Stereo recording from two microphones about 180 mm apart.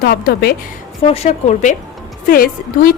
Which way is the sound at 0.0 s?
55° left (ahead or behind).